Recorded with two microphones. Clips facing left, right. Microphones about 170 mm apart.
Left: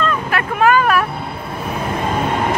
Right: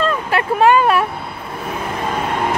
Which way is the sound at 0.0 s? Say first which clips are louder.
Right 1 dB; 30° right (ahead or behind).